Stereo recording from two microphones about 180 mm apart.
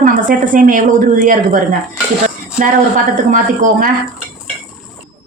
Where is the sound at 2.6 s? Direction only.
50° right (ahead or behind).